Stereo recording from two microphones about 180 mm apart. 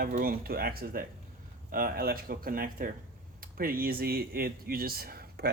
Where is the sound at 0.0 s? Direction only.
55° right (ahead or behind).